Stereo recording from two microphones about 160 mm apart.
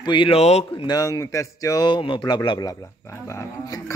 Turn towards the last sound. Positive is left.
turn(degrees=20)  # may be behind; listen again after turning